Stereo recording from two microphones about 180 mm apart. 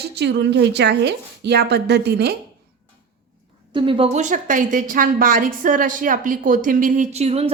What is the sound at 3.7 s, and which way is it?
A woman's voice, 30° right (ahead or behind).